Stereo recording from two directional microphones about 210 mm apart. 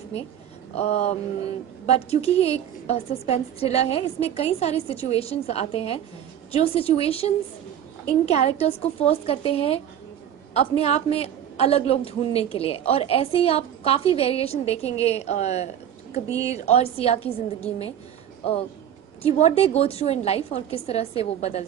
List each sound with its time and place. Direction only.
0.7 s a sound: 30° left (ahead or behind)
1.9 s a woman's voice: 30° left (ahead or behind)
10.8 s a woman's voice: 30° left (ahead or behind)
16.1 s speech: 15° right (ahead or behind)
16.5 s a woman's voice: 30° left (ahead or behind)
19.2 s a woman's voice: 30° left (ahead or behind)